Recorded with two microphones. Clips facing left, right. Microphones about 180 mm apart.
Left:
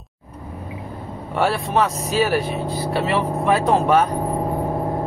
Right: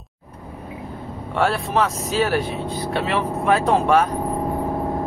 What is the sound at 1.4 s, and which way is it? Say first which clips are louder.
Speech: left 1 dB; centre (ahead or behind).